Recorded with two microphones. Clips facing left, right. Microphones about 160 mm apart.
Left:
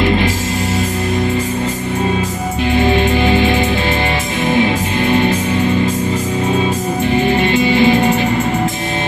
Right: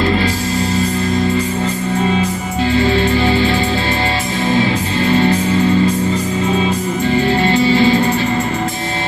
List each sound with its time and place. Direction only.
2.7 s music: 20° left (ahead or behind)
7.1 s music: 20° left (ahead or behind)